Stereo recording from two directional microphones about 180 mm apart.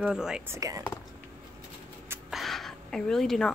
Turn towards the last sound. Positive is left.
turn(degrees=0)  # may be behind; listen again after turning